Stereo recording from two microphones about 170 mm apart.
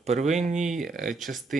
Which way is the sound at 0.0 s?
40° right (ahead or behind).